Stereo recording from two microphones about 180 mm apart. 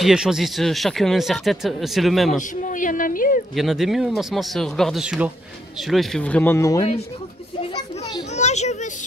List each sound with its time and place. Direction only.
0.0 s speech: 5° right (ahead or behind)
2.3 s a woman's voice: 45° left (ahead or behind)
3.5 s speech: centre (ahead or behind); by 6.9 s 15° left (ahead or behind)
8.3 s children playing: 40° left (ahead or behind)